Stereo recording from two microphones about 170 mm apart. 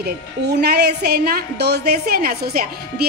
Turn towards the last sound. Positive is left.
turn(degrees=-65)  # may be behind; listen again after turning